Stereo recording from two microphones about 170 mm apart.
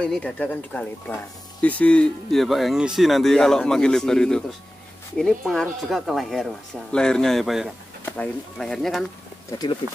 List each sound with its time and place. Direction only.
0.0 s speech: 5° left (ahead or behind)
9.5 s speech: 25° left (ahead or behind)